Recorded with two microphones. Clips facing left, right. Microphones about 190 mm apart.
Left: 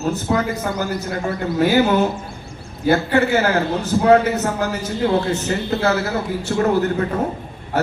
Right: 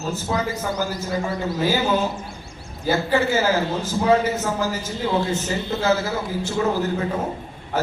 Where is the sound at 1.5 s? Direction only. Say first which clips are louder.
Left 6 dB; 65° left (ahead or behind).